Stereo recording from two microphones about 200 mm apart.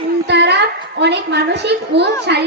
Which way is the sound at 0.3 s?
60° right (ahead or behind).